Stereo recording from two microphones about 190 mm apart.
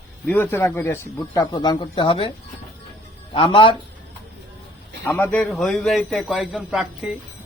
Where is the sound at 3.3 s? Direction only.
30° left (ahead or behind).